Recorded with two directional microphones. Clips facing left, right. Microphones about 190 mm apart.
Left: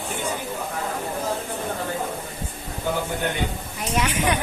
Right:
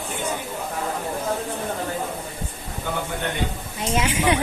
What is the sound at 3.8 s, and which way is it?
Speech, 25° right (ahead or behind).